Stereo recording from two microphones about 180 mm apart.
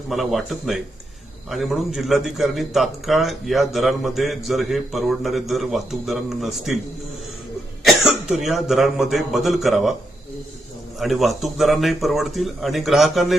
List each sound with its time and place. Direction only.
0.1 s a man's voice: centre (ahead or behind)
7.9 s speech: centre (ahead or behind)
11.0 s a man's voice: centre (ahead or behind)